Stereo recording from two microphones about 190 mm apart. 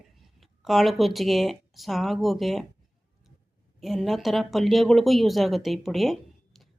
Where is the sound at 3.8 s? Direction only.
Centre (ahead or behind).